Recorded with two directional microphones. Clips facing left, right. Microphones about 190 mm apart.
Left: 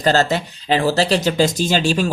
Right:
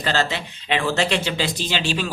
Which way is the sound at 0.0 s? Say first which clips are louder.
Left 7 dB; 40° left (ahead or behind).